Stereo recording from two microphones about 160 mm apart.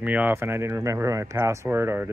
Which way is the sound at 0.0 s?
10° right (ahead or behind).